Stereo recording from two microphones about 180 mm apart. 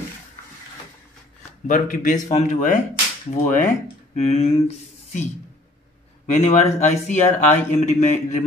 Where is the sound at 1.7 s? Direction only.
50° left (ahead or behind).